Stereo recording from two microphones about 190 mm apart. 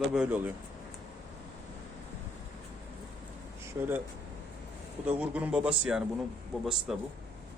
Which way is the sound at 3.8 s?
20° right (ahead or behind).